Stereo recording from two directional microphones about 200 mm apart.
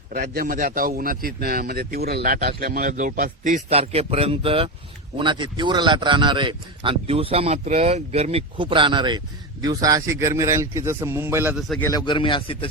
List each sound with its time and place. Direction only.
0.1 s a man's voice: 45° right (ahead or behind); by 11.5 s 10° right (ahead or behind)
11.8 s a man's voice: 20° left (ahead or behind)